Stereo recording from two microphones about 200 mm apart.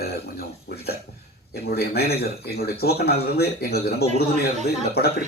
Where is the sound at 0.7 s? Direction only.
55° left (ahead or behind).